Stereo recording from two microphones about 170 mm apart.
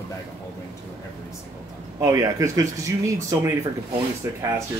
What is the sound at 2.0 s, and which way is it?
Speech, 20° right (ahead or behind).